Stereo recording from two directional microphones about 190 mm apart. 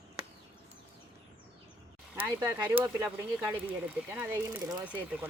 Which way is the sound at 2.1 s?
10° right (ahead or behind).